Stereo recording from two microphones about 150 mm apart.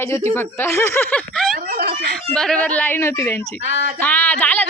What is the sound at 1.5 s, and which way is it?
Speech, 80° right.